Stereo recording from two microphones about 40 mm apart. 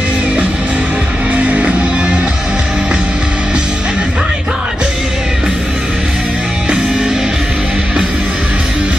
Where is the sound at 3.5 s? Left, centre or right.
Right.